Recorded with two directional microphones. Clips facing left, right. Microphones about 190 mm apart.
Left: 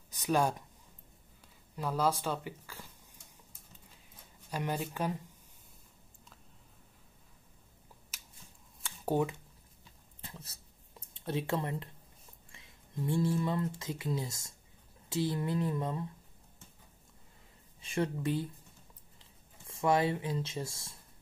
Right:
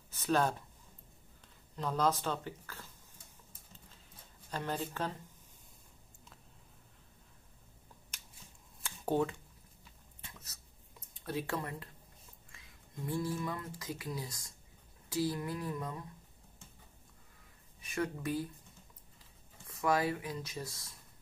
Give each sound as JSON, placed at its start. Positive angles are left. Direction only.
{"t": 0.1, "sound": "speech", "side_deg": 15}
{"t": 1.8, "sound": "speech", "side_deg": 10}
{"t": 4.5, "sound": "speech", "side_deg": 10}
{"t": 8.1, "sound": "scissors", "side_deg": 5}
{"t": 8.8, "sound": "a sound", "side_deg": 10}
{"t": 10.2, "sound": "a sound", "side_deg": 30}
{"t": 12.4, "sound": "speech", "side_deg": 25}
{"t": 17.7, "sound": "speech", "side_deg": 25}
{"t": 19.7, "sound": "speech", "side_deg": 25}